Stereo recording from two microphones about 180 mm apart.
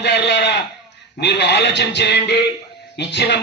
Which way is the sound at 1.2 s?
70° left (ahead or behind).